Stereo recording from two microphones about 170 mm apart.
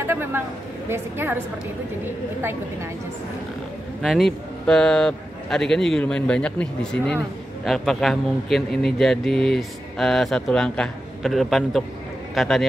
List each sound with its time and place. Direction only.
0.0 s a sound: 15° right (ahead or behind)
0.8 s a woman's voice: 15° right (ahead or behind)
4.0 s a man's voice: centre (ahead or behind)